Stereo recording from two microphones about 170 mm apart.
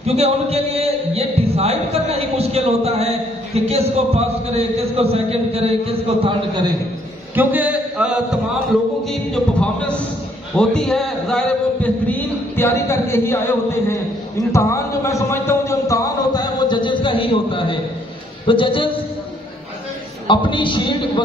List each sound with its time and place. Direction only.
0.0 s a man's voice: 35° right (ahead or behind)
7.3 s a man's voice: 10° right (ahead or behind); by 13.9 s 15° left (ahead or behind)
14.5 s a sound: 15° left (ahead or behind)
18.5 s a man's voice: 30° left (ahead or behind)
20.2 s a man's voice: 30° left (ahead or behind)